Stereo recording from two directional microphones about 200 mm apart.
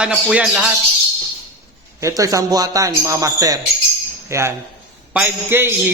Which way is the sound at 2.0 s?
15° right (ahead or behind).